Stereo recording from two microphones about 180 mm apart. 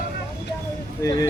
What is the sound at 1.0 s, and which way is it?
Speech, 20° left (ahead or behind).